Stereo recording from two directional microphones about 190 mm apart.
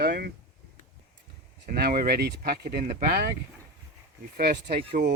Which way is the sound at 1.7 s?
55° right (ahead or behind).